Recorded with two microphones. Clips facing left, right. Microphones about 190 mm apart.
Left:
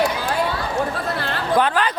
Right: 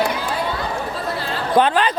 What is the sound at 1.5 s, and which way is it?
Speech, 25° right (ahead or behind).